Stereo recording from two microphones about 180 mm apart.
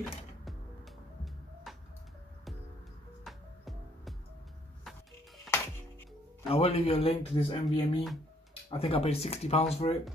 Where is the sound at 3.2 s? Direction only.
Centre (ahead or behind).